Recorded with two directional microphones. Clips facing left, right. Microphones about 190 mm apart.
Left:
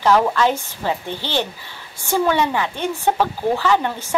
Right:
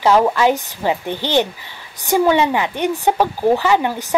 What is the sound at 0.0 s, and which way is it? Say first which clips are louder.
Speech: right 2 dB; 15° right (ahead or behind).